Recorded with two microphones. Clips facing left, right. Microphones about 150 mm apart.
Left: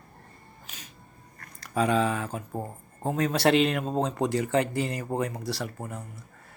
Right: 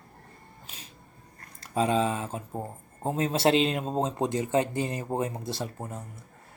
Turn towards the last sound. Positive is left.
turn(degrees=-20)  # may be behind; listen again after turning